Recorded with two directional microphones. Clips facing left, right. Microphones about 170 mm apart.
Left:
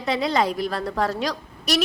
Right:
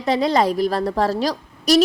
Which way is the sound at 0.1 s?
40° right (ahead or behind).